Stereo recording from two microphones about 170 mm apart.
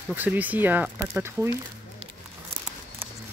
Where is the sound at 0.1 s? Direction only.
10° right (ahead or behind).